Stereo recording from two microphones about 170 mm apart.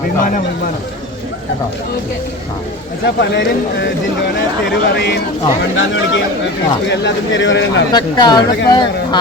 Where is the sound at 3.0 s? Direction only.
90° left.